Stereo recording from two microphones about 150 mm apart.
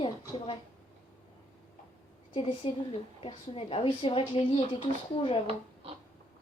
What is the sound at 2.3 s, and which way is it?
A woman's voice, 35° left (ahead or behind).